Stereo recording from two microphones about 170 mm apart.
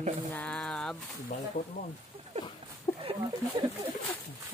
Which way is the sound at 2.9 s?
25° left (ahead or behind).